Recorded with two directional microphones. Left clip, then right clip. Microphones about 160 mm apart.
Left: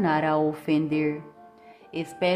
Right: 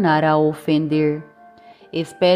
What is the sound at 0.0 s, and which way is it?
A woman's voice, 35° right (ahead or behind).